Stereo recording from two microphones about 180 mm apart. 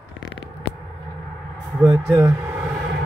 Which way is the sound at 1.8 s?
10° right (ahead or behind).